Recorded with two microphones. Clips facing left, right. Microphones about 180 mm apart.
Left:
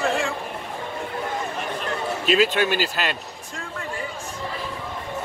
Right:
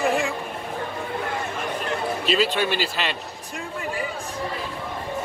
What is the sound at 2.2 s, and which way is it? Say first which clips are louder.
Speech: left 3 dB; 45° left (ahead or behind).